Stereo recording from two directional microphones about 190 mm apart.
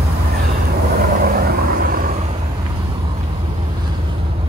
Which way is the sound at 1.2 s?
50° right (ahead or behind).